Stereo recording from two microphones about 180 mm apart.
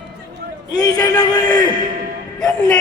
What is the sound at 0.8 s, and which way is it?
Speech, 20° left (ahead or behind).